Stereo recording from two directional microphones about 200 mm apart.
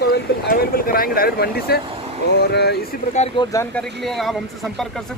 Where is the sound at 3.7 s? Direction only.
Centre (ahead or behind).